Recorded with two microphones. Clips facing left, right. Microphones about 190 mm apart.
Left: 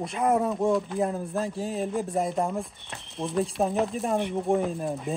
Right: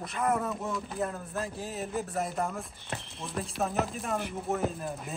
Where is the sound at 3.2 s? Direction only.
35° left (ahead or behind).